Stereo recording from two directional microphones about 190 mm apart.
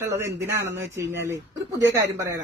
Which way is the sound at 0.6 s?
65° right (ahead or behind).